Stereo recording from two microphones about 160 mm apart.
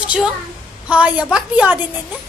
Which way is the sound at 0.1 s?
5° right (ahead or behind).